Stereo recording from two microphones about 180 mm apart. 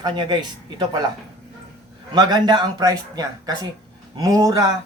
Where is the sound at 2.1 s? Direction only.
25° right (ahead or behind).